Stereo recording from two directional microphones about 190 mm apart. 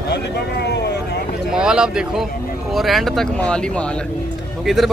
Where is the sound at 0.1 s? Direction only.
60° left (ahead or behind).